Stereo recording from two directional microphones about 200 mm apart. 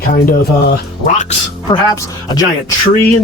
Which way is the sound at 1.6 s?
20° left (ahead or behind).